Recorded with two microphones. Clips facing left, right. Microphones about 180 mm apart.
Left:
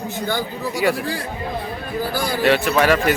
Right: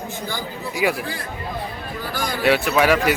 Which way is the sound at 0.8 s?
5° right (ahead or behind).